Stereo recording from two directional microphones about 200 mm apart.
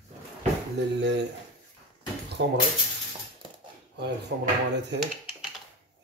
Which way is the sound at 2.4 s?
65° right (ahead or behind).